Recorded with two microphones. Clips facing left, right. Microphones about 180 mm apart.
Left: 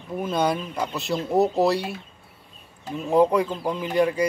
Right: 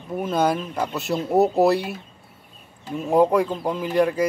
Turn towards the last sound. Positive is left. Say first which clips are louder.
# right 1 dB
turn(degrees=0)  # may be behind; listen again after turning